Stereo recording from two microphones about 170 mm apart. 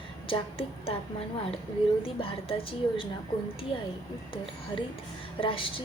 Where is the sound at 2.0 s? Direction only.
35° left (ahead or behind).